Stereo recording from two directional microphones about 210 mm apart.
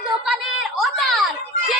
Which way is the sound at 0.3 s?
Centre (ahead or behind).